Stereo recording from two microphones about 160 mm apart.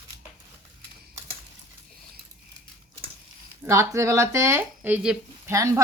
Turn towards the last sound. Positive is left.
turn(degrees=-20)  # may be behind; listen again after turning